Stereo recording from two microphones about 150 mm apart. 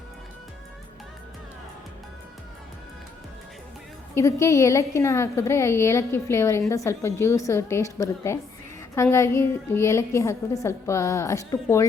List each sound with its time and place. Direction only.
4.1 s a woman's voice: 20° left (ahead or behind)